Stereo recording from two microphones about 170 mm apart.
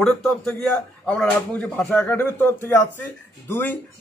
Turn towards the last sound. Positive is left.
turn(degrees=15)  # may be behind; listen again after turning